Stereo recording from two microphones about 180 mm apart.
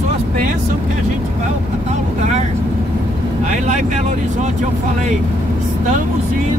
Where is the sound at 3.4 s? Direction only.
40° right (ahead or behind).